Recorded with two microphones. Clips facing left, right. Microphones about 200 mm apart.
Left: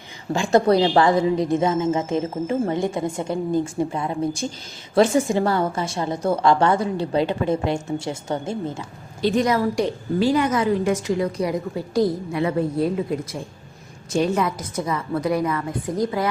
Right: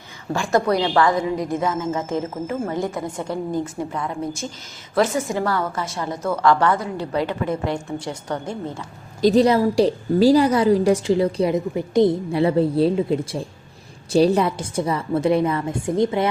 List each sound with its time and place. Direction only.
0.3 s a woman's voice: 25° left (ahead or behind)
9.2 s a woman's voice: 35° right (ahead or behind)